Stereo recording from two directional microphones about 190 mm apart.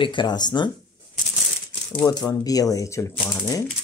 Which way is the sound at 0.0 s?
25° left (ahead or behind).